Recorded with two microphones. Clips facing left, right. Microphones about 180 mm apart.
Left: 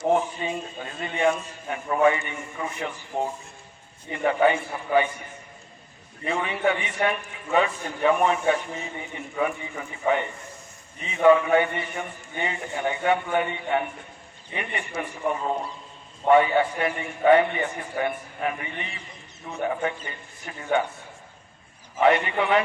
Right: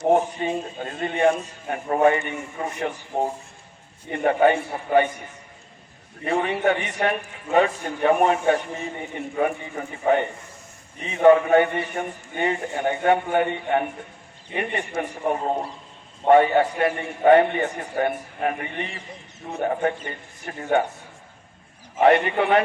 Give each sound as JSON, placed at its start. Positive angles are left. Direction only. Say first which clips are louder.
{"t": 0.1, "sound": "a man's voice", "louder": "right 4 dB", "side_deg": -45}
{"t": 4.1, "sound": "a man's voice", "louder": "right 3 dB", "side_deg": -45}
{"t": 6.2, "sound": "a man's voice", "louder": "right 3 dB", "side_deg": -45}
{"t": 22.0, "sound": "a man's voice", "louder": "right 3 dB", "side_deg": -55}